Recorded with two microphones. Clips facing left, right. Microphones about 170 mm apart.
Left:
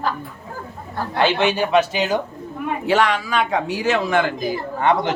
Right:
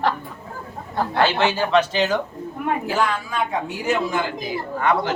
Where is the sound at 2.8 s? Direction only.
85° left.